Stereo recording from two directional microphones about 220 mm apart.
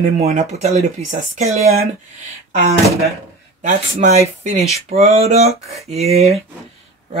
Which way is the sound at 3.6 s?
30° right (ahead or behind).